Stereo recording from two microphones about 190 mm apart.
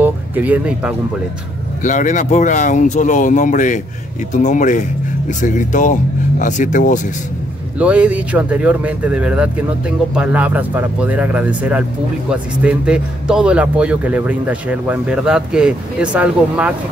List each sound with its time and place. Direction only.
0.0 s speech: 10° right (ahead or behind)
1.8 s speech: 40° left (ahead or behind)
7.8 s speech: 5° right (ahead or behind)